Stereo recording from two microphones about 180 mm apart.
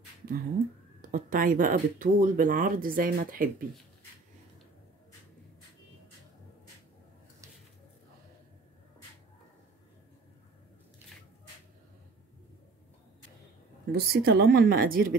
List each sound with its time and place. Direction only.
1.0 s speech: 50° right (ahead or behind)
13.9 s speech: 60° right (ahead or behind)